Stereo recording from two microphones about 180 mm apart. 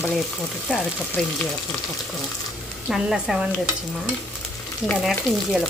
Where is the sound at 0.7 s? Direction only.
5° right (ahead or behind).